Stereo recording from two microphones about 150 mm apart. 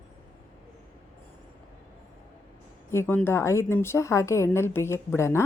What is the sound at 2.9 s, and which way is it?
Speech, 15° left (ahead or behind).